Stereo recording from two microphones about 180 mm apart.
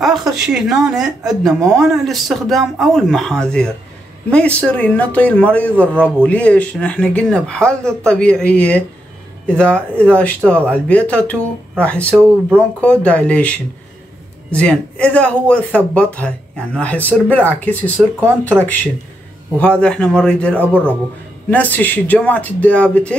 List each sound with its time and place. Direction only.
0.0 s speech: centre (ahead or behind)
12.1 s speech: 15° right (ahead or behind)
13.0 s speech: 5° left (ahead or behind)